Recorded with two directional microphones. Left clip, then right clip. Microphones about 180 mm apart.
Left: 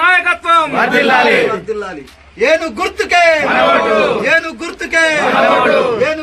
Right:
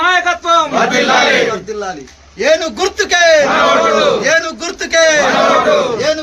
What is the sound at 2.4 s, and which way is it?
Speech, 65° right (ahead or behind).